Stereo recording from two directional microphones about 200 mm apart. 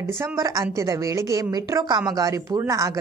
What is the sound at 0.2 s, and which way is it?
A woman's voice, 15° right (ahead or behind).